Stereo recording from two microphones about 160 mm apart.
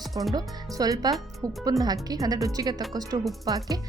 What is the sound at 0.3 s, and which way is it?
Speech, 25° right (ahead or behind).